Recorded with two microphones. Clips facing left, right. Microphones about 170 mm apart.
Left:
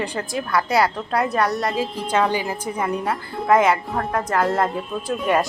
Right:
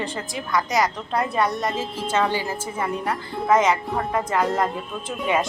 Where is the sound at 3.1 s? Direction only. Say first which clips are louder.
Left 1 dB; centre (ahead or behind).